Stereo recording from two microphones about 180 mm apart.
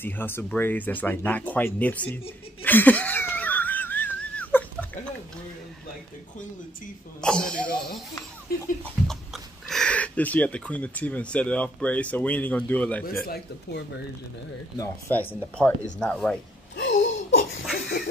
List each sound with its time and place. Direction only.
0.0 s speech: 10° left (ahead or behind)
2.6 s laughter: 10° left (ahead or behind)
7.2 s speech: 5° left (ahead or behind)
9.0 s speech: centre (ahead or behind)
13.0 s speech: 55° left (ahead or behind)
14.8 s speech: 10° left (ahead or behind)
16.7 s laughter: 90° left
17.7 s duck: 55° left (ahead or behind)